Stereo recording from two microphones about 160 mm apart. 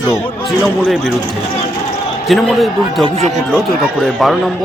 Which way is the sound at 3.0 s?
40° right (ahead or behind).